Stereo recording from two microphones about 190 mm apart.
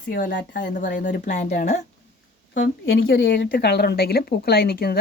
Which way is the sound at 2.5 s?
85° left.